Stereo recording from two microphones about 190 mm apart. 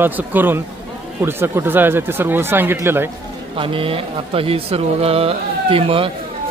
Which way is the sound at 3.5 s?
30° right (ahead or behind).